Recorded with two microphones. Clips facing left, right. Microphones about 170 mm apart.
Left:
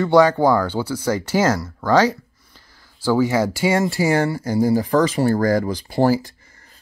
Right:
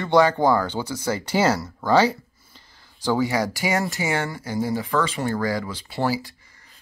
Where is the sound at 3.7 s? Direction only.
30° left (ahead or behind).